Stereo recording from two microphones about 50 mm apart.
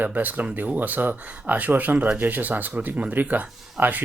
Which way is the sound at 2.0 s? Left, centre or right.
Right.